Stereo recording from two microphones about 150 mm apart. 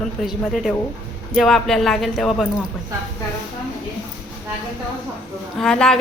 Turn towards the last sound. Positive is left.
turn(degrees=5)  # may be behind; listen again after turning